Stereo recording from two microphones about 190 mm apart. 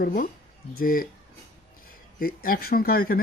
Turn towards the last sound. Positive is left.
turn(degrees=50)  # may be behind; listen again after turning